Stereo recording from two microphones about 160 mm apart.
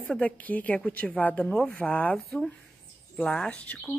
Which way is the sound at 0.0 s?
10° left (ahead or behind).